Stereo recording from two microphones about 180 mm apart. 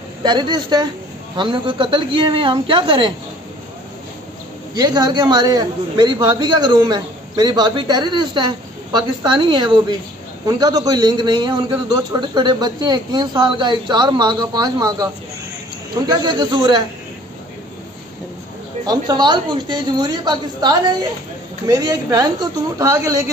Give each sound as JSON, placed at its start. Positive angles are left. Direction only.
{"t": 0.2, "sound": "a man's voice", "side_deg": -25}
{"t": 4.7, "sound": "a man's voice", "side_deg": -25}
{"t": 16.1, "sound": "a man's voice", "side_deg": -25}
{"t": 18.9, "sound": "a man's voice", "side_deg": -25}